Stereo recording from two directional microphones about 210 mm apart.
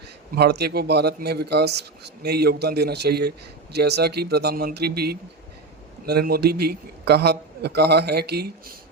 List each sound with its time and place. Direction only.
0.3 s speech: 50° right (ahead or behind)